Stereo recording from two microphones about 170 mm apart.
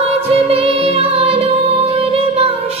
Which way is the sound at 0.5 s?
35° right (ahead or behind).